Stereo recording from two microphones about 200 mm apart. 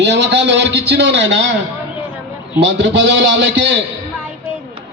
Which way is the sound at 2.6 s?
60° right (ahead or behind).